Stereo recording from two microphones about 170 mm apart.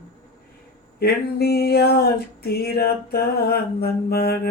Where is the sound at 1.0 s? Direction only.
70° left (ahead or behind).